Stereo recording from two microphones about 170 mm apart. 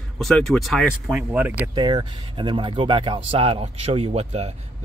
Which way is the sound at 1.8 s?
25° right (ahead or behind).